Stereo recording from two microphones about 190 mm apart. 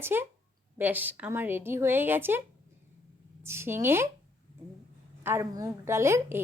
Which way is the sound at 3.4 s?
15° right (ahead or behind).